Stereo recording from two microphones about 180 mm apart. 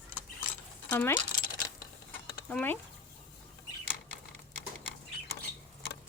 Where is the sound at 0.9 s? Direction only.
10° left (ahead or behind).